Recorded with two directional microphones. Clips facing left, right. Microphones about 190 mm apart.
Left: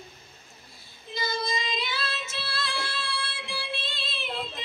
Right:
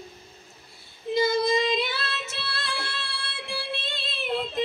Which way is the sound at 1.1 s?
60° right (ahead or behind).